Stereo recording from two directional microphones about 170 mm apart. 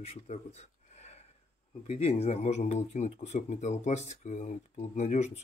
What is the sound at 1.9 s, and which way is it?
Speech, 40° left (ahead or behind).